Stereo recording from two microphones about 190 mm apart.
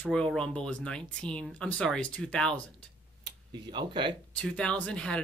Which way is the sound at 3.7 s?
25° right (ahead or behind).